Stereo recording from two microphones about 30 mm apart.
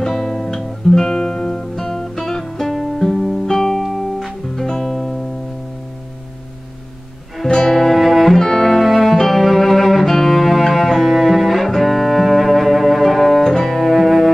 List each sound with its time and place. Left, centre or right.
0.0 s guitar: centre
2.7 s music: centre
3.0 s guitar: centre
3.4 s music: centre
3.9 s music: centre
4.6 s music: centre
7.4 s music: centre
8.4 s music: centre
8.7 s music: centre